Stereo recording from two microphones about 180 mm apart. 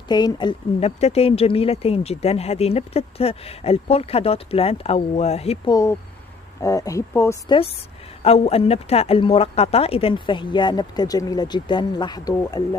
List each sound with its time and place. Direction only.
0.1 s speech: 25° left (ahead or behind)
5.7 s speech: 15° left (ahead or behind)
8.2 s speech: 35° left (ahead or behind)